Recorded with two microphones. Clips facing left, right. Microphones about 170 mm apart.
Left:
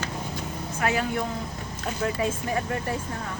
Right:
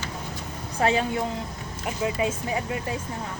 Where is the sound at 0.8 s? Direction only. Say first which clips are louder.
Right 3 dB; 25° right (ahead or behind).